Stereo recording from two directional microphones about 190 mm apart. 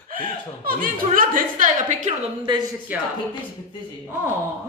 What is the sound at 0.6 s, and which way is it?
Speech, 45° right (ahead or behind).